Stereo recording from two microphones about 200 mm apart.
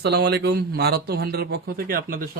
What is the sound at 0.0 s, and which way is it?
Speech, 55° right (ahead or behind).